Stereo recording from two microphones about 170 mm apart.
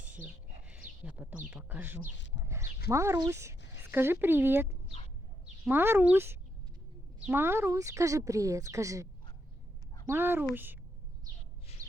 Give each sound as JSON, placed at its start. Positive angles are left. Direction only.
{"t": 0.0, "sound": "a sound", "side_deg": -10}
{"t": 0.7, "sound": "a woman's voice", "side_deg": -10}
{"t": 10.1, "sound": "a woman's voice", "side_deg": -10}